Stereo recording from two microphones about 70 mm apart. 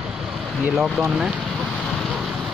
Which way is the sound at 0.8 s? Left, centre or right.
Centre.